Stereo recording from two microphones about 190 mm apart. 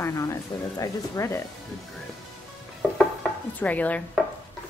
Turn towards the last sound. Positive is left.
turn(degrees=5)  # may be behind; listen again after turning